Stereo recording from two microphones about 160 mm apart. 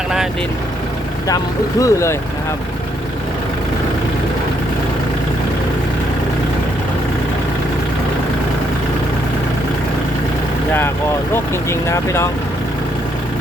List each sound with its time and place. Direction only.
1.8 s speech: 20° left (ahead or behind)
11.7 s speech: 15° left (ahead or behind)